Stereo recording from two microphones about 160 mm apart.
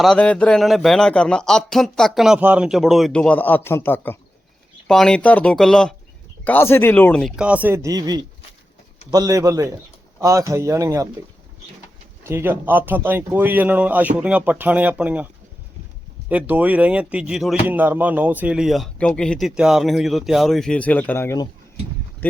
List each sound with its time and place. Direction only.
0.0 s a man's voice: 5° left (ahead or behind); by 11.1 s 20° right (ahead or behind)
12.3 s speech: 15° right (ahead or behind)
16.3 s speech: 10° right (ahead or behind); by 22.4 s 10° left (ahead or behind)